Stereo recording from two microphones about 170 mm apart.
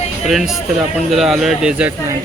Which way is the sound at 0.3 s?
Centre (ahead or behind).